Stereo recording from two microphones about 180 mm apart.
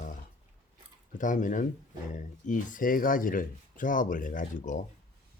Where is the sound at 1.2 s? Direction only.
45° left (ahead or behind).